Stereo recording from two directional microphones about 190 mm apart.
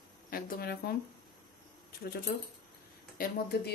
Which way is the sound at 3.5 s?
55° left (ahead or behind).